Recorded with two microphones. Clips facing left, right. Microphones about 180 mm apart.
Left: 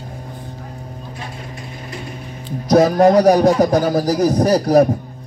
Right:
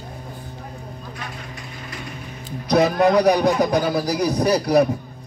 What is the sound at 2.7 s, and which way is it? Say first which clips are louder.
A man's voice: left 5 dB; 45° left (ahead or behind).